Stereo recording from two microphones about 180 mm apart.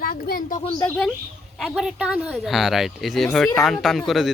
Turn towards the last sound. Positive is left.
turn(degrees=0)  # may be behind; listen again after turning